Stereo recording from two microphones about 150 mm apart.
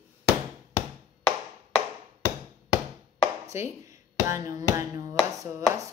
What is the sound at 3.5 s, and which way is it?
Speech, 20° right (ahead or behind).